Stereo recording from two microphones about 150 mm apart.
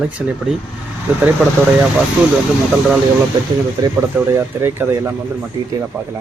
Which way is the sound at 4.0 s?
15° right (ahead or behind).